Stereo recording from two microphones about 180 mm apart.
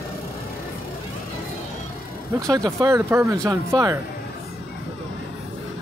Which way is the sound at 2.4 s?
20° right (ahead or behind).